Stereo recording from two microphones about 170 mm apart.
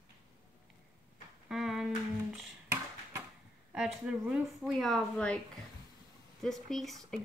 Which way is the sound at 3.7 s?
5° right (ahead or behind).